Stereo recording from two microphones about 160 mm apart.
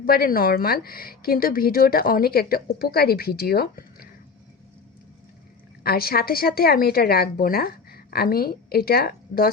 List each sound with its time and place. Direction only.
0.0 s a woman's voice: 70° left (ahead or behind)
5.8 s a woman's voice: 70° left (ahead or behind)